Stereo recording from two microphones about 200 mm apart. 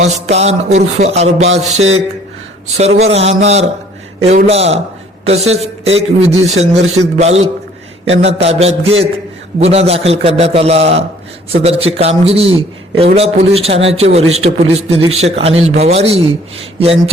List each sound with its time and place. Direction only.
0.0 s a man's voice: 35° right (ahead or behind)